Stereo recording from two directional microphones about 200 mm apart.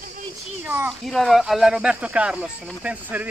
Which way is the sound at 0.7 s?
10° right (ahead or behind).